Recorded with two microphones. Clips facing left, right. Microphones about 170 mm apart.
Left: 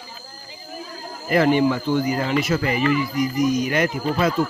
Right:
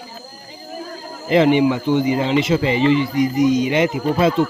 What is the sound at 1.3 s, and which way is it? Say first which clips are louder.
Speech: right 3 dB; 20° right (ahead or behind).